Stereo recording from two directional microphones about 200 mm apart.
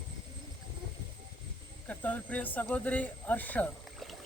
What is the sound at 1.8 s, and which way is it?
Speech, 5° left (ahead or behind).